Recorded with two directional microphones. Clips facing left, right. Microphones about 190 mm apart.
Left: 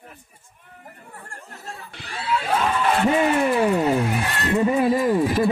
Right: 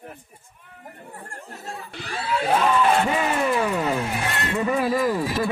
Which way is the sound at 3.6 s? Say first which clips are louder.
Left 4 dB; 15° left (ahead or behind).